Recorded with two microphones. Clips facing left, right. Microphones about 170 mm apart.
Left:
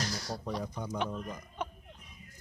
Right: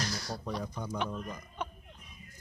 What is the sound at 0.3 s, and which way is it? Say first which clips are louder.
A man's voice: left 1 dB; 20° left (ahead or behind).